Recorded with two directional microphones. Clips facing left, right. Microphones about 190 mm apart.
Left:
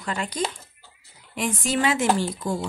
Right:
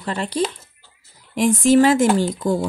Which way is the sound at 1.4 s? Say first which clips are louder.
Right 10 dB; 40° right (ahead or behind).